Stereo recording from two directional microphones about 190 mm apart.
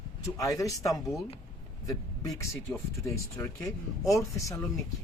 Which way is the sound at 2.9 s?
15° left (ahead or behind).